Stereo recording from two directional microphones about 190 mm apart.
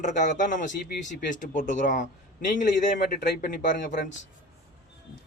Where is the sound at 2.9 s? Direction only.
55° left (ahead or behind).